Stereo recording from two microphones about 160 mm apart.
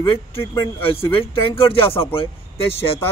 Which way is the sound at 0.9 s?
35° left (ahead or behind).